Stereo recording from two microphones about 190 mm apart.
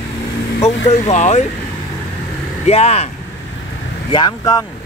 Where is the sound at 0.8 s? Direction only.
35° left (ahead or behind).